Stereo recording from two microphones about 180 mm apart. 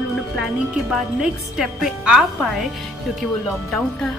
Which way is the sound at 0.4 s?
Centre (ahead or behind).